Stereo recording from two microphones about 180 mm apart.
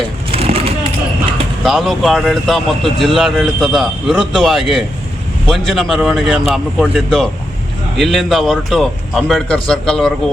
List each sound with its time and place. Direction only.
0.3 s vehicle: 35° right (ahead or behind)
1.6 s speech: centre (ahead or behind)